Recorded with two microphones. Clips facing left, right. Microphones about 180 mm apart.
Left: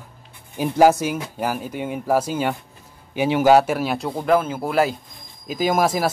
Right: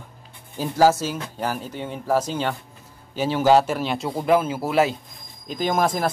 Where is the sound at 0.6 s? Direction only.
15° left (ahead or behind).